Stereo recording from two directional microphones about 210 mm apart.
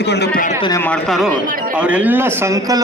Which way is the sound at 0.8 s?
5° left (ahead or behind).